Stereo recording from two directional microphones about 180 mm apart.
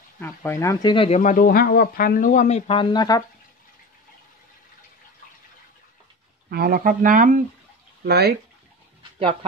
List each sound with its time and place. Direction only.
0.2 s speech: 15° left (ahead or behind)
0.9 s speech: 30° left (ahead or behind)
1.2 s speech: 50° left (ahead or behind); by 3.3 s 20° left (ahead or behind)
6.5 s speech: 55° right (ahead or behind)
8.0 s speech: 60° right (ahead or behind)